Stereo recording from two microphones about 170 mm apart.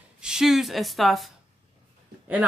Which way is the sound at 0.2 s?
5° right (ahead or behind).